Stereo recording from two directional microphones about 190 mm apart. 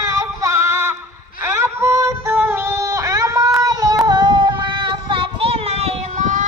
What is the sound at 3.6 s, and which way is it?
Child singing, 20° right (ahead or behind).